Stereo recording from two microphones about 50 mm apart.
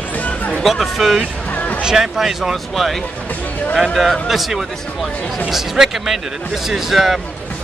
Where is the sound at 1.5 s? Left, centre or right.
Left.